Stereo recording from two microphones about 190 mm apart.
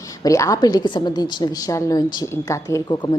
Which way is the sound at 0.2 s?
15° left (ahead or behind).